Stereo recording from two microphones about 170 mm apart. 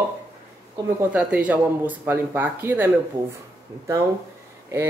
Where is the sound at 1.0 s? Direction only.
10° right (ahead or behind).